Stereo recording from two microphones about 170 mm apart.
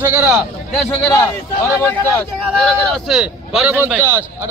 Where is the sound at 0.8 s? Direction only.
10° left (ahead or behind).